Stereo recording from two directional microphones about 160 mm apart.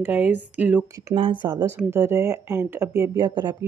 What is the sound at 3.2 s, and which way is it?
Speech, 25° right (ahead or behind).